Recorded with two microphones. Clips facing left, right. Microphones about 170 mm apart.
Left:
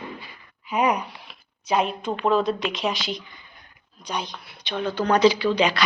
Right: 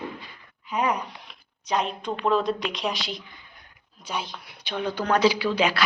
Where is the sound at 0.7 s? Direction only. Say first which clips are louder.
Left 3 dB; 10° left (ahead or behind).